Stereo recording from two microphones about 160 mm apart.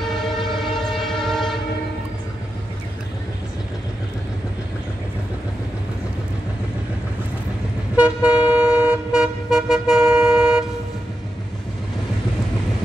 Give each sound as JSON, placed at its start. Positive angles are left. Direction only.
{"t": 0.4, "sound": "train", "side_deg": 0}
{"t": 7.9, "sound": "vehicle", "side_deg": -5}